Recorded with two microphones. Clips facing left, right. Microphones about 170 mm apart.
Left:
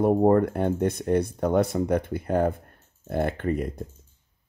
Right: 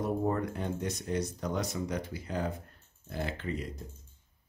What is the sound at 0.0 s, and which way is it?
Speech, 55° left (ahead or behind).